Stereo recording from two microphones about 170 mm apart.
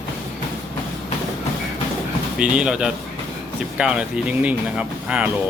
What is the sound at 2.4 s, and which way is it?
Speech, 5° right (ahead or behind).